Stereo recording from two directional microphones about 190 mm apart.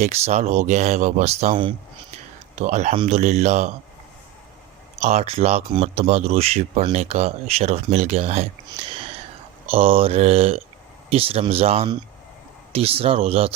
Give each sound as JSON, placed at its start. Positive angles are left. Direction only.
{"t": 0.0, "sound": "speech", "side_deg": -35}
{"t": 4.9, "sound": "speech", "side_deg": -35}
{"t": 9.6, "sound": "speech", "side_deg": -30}